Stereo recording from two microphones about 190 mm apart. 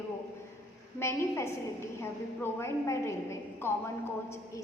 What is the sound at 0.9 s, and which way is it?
A woman's voice, 15° left (ahead or behind).